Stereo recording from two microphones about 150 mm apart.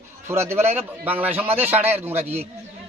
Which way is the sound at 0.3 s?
15° right (ahead or behind).